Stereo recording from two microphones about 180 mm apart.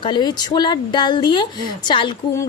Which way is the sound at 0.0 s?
25° left (ahead or behind).